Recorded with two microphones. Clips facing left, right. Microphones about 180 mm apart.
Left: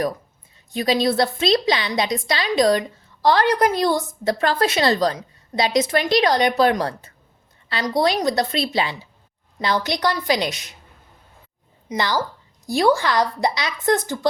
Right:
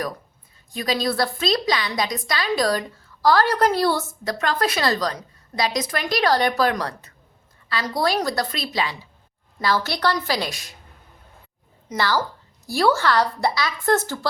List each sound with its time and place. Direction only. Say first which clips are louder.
0.7 s a woman's voice: left 4 dB; 25° left (ahead or behind)
4.3 s a woman's voice: left 3 dB; 30° left (ahead or behind)
11.9 s a woman's voice: even; 15° left (ahead or behind)